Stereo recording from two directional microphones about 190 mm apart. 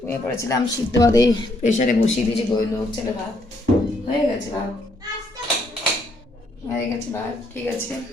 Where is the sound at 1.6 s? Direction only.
45° left (ahead or behind).